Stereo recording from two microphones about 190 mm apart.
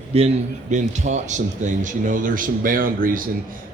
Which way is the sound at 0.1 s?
30° right (ahead or behind).